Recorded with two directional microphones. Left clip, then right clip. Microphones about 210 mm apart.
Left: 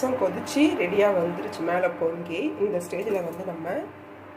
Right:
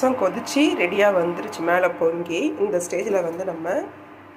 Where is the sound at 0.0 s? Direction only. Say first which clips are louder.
Right 4 dB; 10° right (ahead or behind).